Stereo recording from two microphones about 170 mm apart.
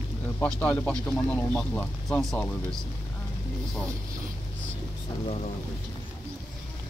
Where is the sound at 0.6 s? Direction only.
10° left (ahead or behind).